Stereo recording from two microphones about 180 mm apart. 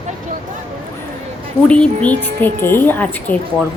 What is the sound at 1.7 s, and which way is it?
A woman's voice, 5° left (ahead or behind).